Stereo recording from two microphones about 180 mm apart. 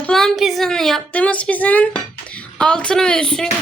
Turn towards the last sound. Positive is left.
turn(degrees=5)  # may be behind; listen again after turning